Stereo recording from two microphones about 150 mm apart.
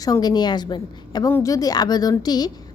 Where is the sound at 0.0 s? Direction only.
25° left (ahead or behind).